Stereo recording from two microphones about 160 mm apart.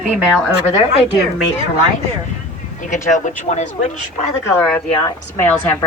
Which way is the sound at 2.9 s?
50° left (ahead or behind).